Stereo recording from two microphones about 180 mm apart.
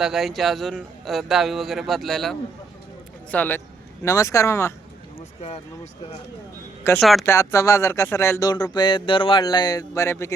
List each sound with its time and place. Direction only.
0.0 s a man's voice: centre (ahead or behind)
3.3 s speech: 10° left (ahead or behind)
5.4 s speech: 35° left (ahead or behind)
7.0 s a man's voice: centre (ahead or behind)
7.3 s speech: 15° left (ahead or behind)